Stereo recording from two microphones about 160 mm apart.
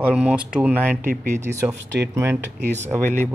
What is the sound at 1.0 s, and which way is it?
Speech, 60° right (ahead or behind).